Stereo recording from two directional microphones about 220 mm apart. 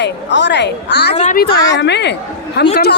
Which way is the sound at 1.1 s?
35° left (ahead or behind).